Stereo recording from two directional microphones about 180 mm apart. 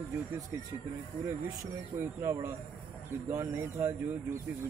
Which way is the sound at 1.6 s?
15° right (ahead or behind).